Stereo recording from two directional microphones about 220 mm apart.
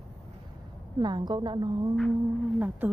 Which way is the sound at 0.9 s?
20° right (ahead or behind).